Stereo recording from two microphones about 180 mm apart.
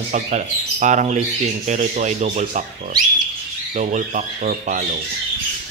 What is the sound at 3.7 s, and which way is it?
Speech, 45° right (ahead or behind).